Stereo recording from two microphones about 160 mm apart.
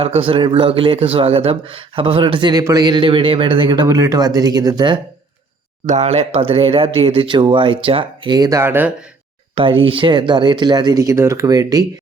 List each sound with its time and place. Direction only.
0.0 s speech: 35° right (ahead or behind)
5.8 s speech: 45° right (ahead or behind); by 8.9 s 15° right (ahead or behind)
9.6 s speech: 35° right (ahead or behind)